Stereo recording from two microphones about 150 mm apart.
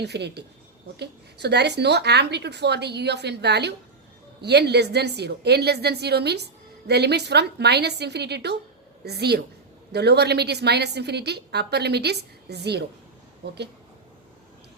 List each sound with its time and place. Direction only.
0.0 s a woman's voice: 90° right